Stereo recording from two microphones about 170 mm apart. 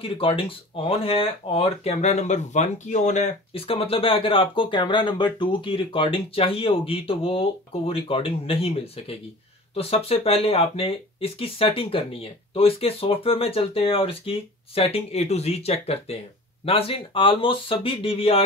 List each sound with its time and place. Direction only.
0.0 s speech: 35° left (ahead or behind)